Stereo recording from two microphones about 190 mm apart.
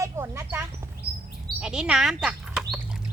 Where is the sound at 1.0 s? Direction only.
55° right (ahead or behind).